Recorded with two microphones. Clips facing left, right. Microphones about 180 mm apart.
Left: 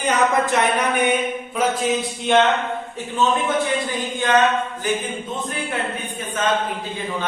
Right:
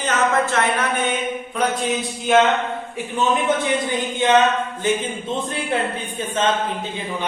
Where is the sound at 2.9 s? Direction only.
20° right (ahead or behind).